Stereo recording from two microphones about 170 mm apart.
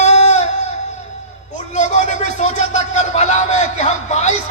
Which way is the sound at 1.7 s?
45° left (ahead or behind).